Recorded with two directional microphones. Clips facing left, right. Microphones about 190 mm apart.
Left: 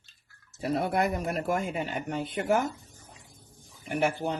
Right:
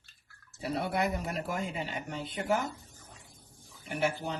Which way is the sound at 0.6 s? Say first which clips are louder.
Left 4 dB; 45° left (ahead or behind).